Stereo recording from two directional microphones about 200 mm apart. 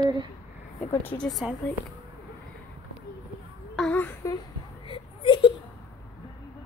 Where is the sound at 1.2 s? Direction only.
Centre (ahead or behind).